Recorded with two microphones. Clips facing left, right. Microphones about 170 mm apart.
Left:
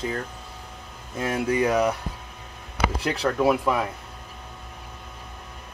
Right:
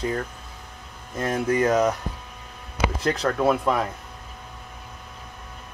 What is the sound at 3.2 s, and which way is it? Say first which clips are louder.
Speech: left 1 dB; 10° left (ahead or behind).